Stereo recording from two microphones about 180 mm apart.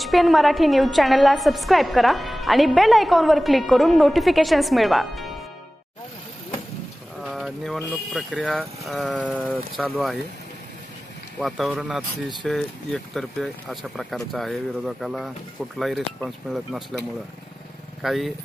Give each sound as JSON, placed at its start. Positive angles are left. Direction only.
{"t": 0.0, "sound": "a woman's voice", "side_deg": 0}
{"t": 7.2, "sound": "a woman's voice", "side_deg": 0}
{"t": 11.4, "sound": "a woman's voice", "side_deg": -5}
{"t": 18.0, "sound": "a woman's voice", "side_deg": 0}